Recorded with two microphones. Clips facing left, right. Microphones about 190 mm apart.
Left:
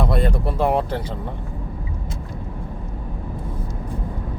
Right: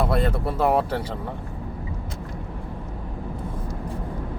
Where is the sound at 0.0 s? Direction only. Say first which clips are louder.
Left 1 dB; 5° right (ahead or behind).